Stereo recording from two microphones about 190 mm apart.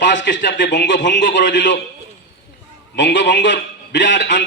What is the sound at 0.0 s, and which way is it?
A man's voice, 70° left (ahead or behind).